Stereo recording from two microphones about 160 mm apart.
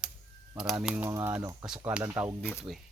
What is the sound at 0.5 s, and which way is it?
Speech, centre (ahead or behind).